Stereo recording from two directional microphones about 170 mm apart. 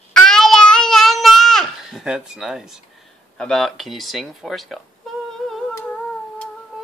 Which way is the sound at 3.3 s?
5° left (ahead or behind).